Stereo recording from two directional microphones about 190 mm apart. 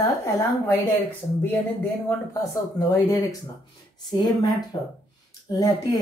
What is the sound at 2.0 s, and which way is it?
Speech, 15° left (ahead or behind).